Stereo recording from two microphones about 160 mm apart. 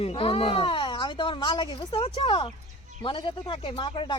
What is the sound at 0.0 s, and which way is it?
Speech, 35° left (ahead or behind).